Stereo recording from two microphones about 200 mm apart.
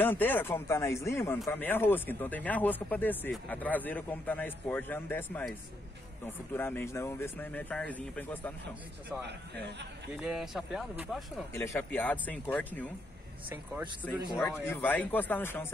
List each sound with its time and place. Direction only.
0.0 s speech: 10° left (ahead or behind)
10.2 s speech: centre (ahead or behind)
11.5 s speech: 10° left (ahead or behind)
14.2 s a man's voice: 20° left (ahead or behind)
14.6 s speech: 10° left (ahead or behind)